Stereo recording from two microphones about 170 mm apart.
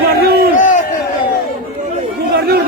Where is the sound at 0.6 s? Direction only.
50° left (ahead or behind).